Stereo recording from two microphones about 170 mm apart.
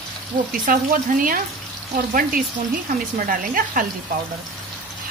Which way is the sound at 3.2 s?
55° right (ahead or behind).